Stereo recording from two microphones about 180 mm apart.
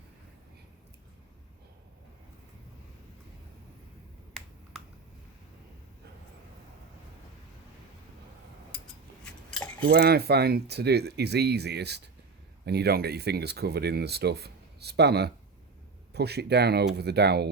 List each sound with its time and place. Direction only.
9.2 s cutlery: 5° left (ahead or behind)
9.8 s speech: 60° right (ahead or behind)